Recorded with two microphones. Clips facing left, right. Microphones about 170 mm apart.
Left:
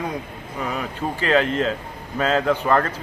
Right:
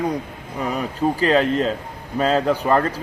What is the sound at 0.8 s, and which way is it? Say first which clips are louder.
Speech: right 6 dB; 35° right (ahead or behind).